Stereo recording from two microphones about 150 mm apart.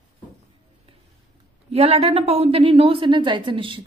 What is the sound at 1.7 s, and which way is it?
A woman's voice, 45° right (ahead or behind).